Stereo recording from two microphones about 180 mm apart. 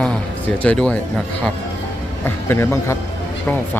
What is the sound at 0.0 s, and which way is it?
Music, 10° left (ahead or behind).